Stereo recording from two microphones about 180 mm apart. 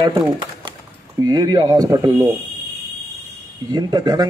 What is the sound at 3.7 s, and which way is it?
Speech, 20° right (ahead or behind).